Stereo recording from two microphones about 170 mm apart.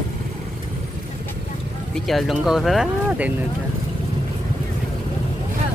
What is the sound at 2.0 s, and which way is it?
Speech, centre (ahead or behind).